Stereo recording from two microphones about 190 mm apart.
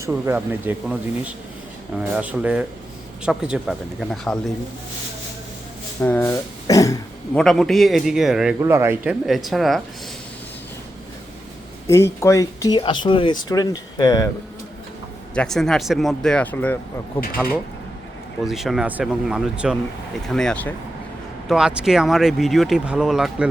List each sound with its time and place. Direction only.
0.0 s speech: 10° right (ahead or behind)
6.0 s speech: 10° left (ahead or behind)
7.3 s speech: centre (ahead or behind)
8.6 s speech: 15° right (ahead or behind)
11.9 s speech: 15° left (ahead or behind)
15.4 s speech: centre (ahead or behind)